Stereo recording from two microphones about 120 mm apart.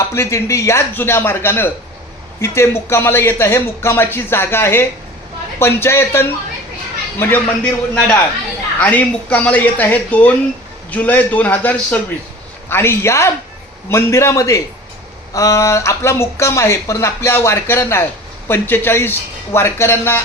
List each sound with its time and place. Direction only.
0.1 s speech: 25° left (ahead or behind)